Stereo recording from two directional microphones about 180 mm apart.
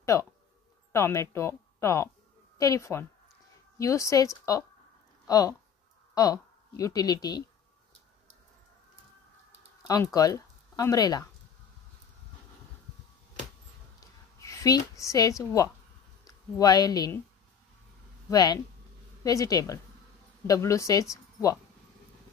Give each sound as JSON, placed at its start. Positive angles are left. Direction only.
{"t": 0.0, "sound": "a woman's voice", "side_deg": 15}
{"t": 9.8, "sound": "speech", "side_deg": 20}
{"t": 13.9, "sound": "a sound", "side_deg": 20}
{"t": 16.3, "sound": "speech", "side_deg": 20}
{"t": 18.3, "sound": "a woman's voice", "side_deg": 20}